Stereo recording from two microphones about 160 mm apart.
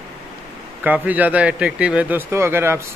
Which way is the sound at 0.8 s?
10° right (ahead or behind).